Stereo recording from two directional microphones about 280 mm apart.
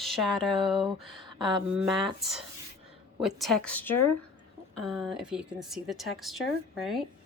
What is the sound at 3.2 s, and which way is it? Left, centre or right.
Speech, centre.